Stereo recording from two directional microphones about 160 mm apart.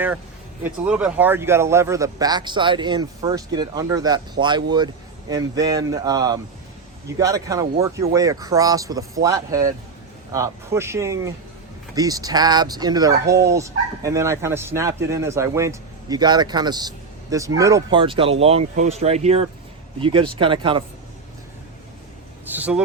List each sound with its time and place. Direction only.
0.6 s speech: 10° right (ahead or behind)
18.0 s speech: 35° right (ahead or behind)
22.4 s speech: 10° right (ahead or behind)